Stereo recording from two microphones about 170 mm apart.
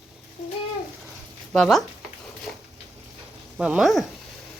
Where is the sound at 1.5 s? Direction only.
Centre (ahead or behind).